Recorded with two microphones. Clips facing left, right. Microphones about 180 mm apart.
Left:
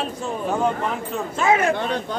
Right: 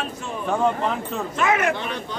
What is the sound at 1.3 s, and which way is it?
Speech, 30° left (ahead or behind).